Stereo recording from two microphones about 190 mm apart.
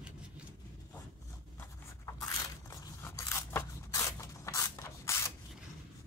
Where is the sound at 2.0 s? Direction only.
15° left (ahead or behind).